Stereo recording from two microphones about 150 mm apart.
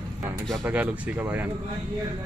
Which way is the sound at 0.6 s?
10° right (ahead or behind).